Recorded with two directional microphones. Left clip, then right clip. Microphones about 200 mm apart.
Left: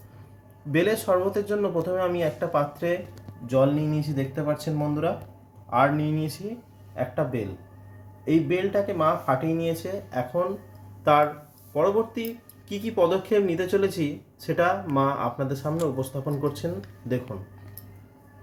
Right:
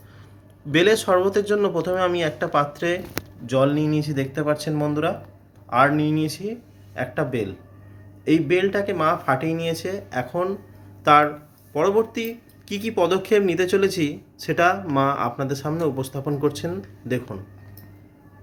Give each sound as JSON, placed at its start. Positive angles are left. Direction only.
{"t": 0.7, "sound": "speech", "side_deg": 0}